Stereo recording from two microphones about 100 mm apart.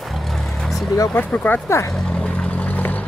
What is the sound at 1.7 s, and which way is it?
Speech, 30° left (ahead or behind).